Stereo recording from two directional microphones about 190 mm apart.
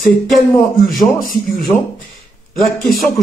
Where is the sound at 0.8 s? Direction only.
Centre (ahead or behind).